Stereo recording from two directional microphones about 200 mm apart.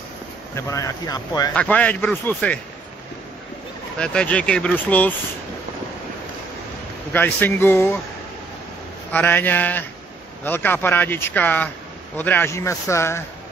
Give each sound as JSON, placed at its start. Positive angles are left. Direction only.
{"t": 0.6, "sound": "speech", "side_deg": 15}
{"t": 1.5, "sound": "speech", "side_deg": 5}
{"t": 4.0, "sound": "speech", "side_deg": 5}
{"t": 7.1, "sound": "speech", "side_deg": 10}
{"t": 9.1, "sound": "speech", "side_deg": 10}